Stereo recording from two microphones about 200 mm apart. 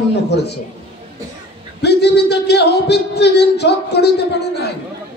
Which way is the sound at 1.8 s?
55° left (ahead or behind).